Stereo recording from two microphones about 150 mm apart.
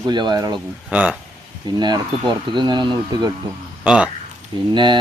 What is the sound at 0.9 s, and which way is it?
Speech, 10° right (ahead or behind).